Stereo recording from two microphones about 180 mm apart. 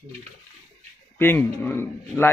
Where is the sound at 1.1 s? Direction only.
10° left (ahead or behind).